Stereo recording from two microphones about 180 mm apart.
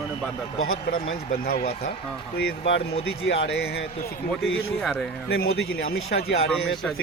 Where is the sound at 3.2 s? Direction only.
80° left.